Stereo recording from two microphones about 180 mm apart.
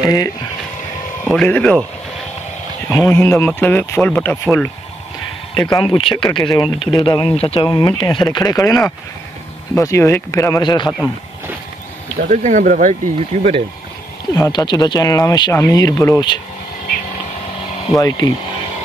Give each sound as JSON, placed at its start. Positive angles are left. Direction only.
{"t": 0.0, "sound": "speech", "side_deg": 20}
{"t": 1.2, "sound": "speech", "side_deg": 5}
{"t": 2.9, "sound": "speech", "side_deg": 10}
{"t": 5.6, "sound": "speech", "side_deg": 25}
{"t": 12.2, "sound": "speech", "side_deg": -45}
{"t": 14.3, "sound": "speech", "side_deg": 20}
{"t": 17.9, "sound": "speech", "side_deg": 20}